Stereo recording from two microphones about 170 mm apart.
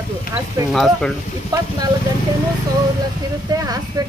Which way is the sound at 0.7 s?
Centre (ahead or behind).